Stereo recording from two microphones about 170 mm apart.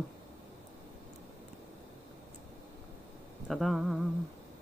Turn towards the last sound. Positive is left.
turn(degrees=0)  # may be behind; listen again after turning